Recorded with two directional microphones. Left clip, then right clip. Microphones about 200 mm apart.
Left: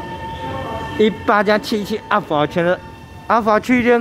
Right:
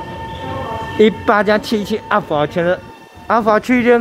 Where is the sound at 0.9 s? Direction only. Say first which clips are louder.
Right 3 dB; 5° right (ahead or behind).